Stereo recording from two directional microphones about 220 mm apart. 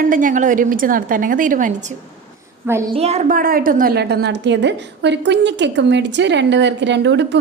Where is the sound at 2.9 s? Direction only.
30° right (ahead or behind).